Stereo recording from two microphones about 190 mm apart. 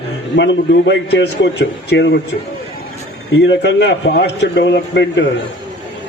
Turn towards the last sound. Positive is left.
turn(degrees=65)  # may be behind; listen again after turning